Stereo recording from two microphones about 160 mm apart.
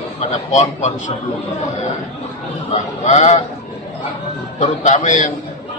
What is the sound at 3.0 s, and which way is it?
Speech, 45° left (ahead or behind).